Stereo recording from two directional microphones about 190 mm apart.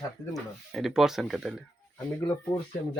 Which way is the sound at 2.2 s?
20° left (ahead or behind).